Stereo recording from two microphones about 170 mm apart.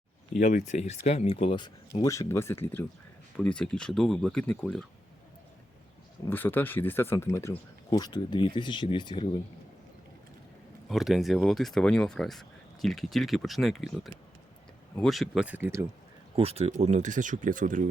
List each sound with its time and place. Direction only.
0.3 s speech: 45° left (ahead or behind); by 4.9 s 5° left (ahead or behind)
6.2 s speech: 10° left (ahead or behind); by 9.4 s 25° left (ahead or behind)
10.8 s speech: centre (ahead or behind)
16.3 s speech: 35° right (ahead or behind)